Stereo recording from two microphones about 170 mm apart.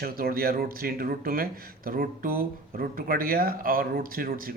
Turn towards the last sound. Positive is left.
turn(degrees=-55)  # may be behind; listen again after turning